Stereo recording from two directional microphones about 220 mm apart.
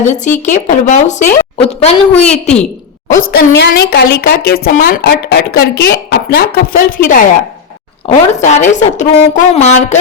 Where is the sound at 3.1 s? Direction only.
50° left (ahead or behind).